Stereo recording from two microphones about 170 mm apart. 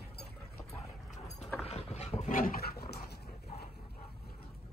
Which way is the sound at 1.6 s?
40° left (ahead or behind).